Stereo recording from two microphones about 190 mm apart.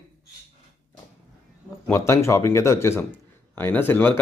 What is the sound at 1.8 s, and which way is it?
Speech, 15° left (ahead or behind).